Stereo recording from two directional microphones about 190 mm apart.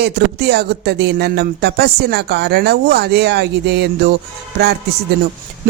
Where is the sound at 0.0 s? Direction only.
55° right (ahead or behind).